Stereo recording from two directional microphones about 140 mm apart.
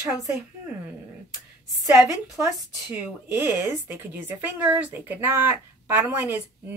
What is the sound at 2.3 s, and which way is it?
A woman's voice, 25° right (ahead or behind).